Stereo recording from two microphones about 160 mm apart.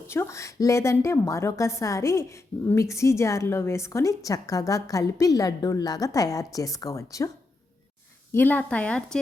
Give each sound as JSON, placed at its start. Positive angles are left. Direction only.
{"t": 0.1, "sound": "a woman's voice", "side_deg": 15}
{"t": 8.3, "sound": "a woman's voice", "side_deg": 10}